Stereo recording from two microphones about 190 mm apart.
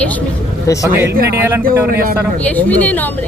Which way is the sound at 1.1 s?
55° right (ahead or behind).